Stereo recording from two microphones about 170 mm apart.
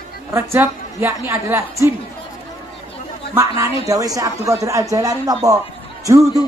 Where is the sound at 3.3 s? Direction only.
15° right (ahead or behind).